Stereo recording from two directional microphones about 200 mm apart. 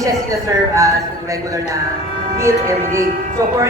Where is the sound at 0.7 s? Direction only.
15° right (ahead or behind).